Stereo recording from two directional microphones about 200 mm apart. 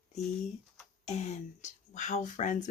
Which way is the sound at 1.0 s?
35° left (ahead or behind).